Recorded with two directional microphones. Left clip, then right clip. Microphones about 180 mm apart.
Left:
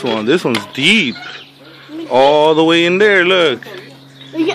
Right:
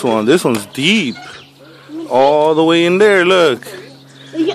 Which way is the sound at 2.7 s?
15° right (ahead or behind).